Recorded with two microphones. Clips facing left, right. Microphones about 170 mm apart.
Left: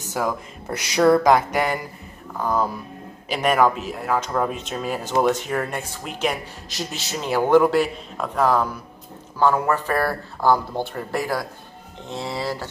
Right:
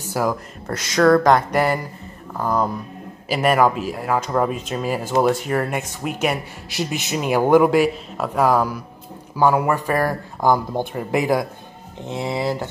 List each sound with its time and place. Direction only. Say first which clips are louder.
0.1 s speech: right 3 dB; centre (ahead or behind)
0.7 s speech: right 1 dB; 15° left (ahead or behind); by 12.6 s 20° right (ahead or behind)